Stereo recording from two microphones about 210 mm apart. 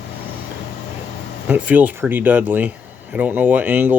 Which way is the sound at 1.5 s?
5° right (ahead or behind).